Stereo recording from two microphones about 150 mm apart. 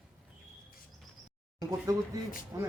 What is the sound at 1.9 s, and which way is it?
Speech, 25° right (ahead or behind).